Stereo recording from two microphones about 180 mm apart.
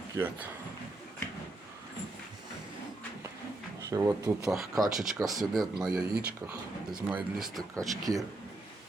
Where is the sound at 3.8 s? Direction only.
20° right (ahead or behind).